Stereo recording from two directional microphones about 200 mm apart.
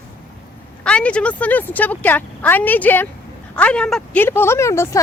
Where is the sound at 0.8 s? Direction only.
5° left (ahead or behind).